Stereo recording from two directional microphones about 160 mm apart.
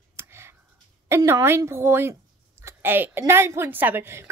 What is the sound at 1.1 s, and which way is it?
A woman's voice, 20° right (ahead or behind).